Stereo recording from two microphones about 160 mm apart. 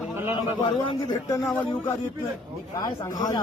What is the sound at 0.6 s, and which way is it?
Speech, 30° left (ahead or behind).